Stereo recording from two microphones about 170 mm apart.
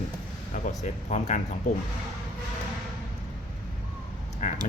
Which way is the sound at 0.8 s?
45° left (ahead or behind).